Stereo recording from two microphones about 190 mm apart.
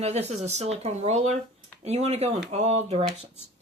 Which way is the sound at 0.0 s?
35° right (ahead or behind).